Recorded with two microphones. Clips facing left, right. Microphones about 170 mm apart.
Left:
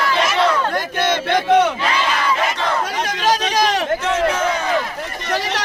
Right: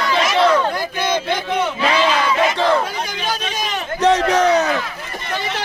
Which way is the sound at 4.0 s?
35° right (ahead or behind).